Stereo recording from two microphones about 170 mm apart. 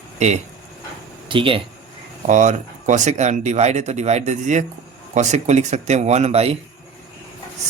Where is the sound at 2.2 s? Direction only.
45° right (ahead or behind).